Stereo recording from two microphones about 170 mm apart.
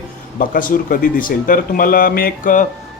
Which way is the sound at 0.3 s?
55° left (ahead or behind).